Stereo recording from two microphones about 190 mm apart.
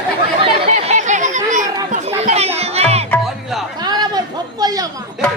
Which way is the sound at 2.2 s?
35° right (ahead or behind).